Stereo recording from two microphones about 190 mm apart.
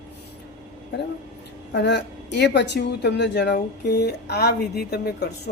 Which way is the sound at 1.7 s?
65° left (ahead or behind).